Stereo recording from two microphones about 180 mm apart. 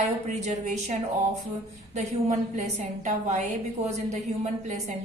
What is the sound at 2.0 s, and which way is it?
A woman's voice, 40° right (ahead or behind).